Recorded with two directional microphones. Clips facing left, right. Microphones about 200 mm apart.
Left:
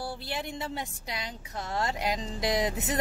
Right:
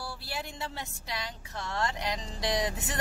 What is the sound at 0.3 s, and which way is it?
Speech, 20° left (ahead or behind).